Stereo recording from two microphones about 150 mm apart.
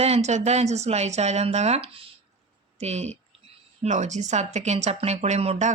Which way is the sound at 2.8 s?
45° right (ahead or behind).